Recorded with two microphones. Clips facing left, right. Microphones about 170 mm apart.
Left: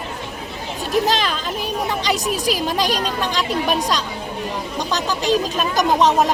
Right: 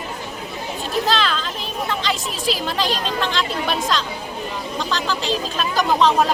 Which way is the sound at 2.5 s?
15° left (ahead or behind).